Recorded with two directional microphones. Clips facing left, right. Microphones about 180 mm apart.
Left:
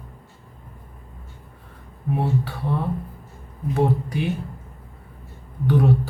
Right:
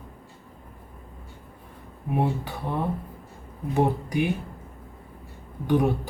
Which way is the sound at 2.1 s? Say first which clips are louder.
Left 2 dB; 15° right (ahead or behind).